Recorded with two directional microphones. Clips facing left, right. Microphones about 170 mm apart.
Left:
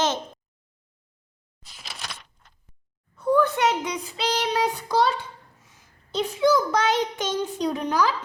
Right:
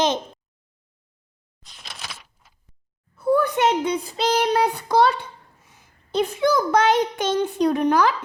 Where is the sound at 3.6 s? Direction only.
25° right (ahead or behind); by 5.1 s 60° right (ahead or behind).